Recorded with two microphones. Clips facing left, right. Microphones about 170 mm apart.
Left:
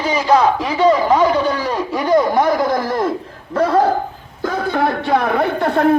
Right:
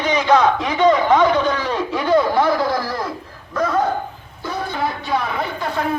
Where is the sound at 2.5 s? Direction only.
20° left (ahead or behind).